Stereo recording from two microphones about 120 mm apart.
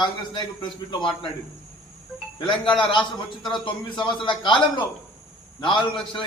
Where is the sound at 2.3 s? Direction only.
40° left (ahead or behind).